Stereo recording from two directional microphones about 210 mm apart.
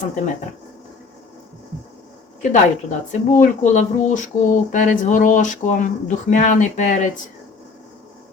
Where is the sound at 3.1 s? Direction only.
35° left (ahead or behind).